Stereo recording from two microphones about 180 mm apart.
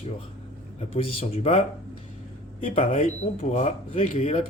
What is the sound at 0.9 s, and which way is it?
Speech, 35° left (ahead or behind).